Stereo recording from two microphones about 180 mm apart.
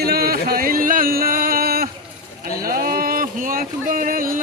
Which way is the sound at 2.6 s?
55° right (ahead or behind).